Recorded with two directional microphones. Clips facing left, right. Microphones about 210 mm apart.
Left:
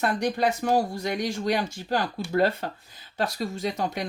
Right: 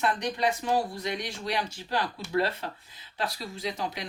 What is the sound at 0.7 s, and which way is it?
Speech, 45° left (ahead or behind).